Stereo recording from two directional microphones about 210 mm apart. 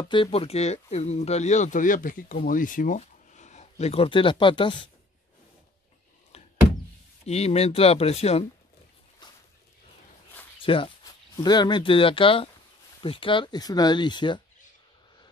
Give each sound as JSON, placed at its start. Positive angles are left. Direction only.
{"t": 0.0, "sound": "speech", "side_deg": 25}
{"t": 6.3, "sound": "door", "side_deg": 30}
{"t": 7.2, "sound": "speech", "side_deg": 30}
{"t": 9.2, "sound": "a sound", "side_deg": 20}
{"t": 10.6, "sound": "speech", "side_deg": 25}